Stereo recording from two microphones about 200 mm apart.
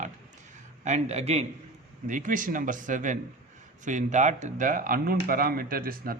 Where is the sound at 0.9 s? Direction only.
35° right (ahead or behind).